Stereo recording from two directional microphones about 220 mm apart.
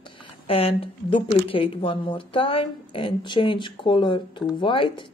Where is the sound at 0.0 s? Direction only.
25° left (ahead or behind).